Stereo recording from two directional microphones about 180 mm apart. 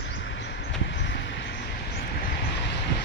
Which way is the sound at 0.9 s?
75° left (ahead or behind).